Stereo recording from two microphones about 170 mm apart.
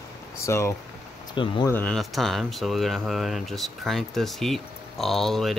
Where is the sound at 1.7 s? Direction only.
10° left (ahead or behind).